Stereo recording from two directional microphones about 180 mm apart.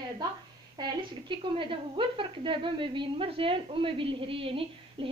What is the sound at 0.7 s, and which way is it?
A woman's voice, 25° right (ahead or behind).